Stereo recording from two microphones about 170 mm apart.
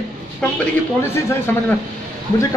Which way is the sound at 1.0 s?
15° left (ahead or behind).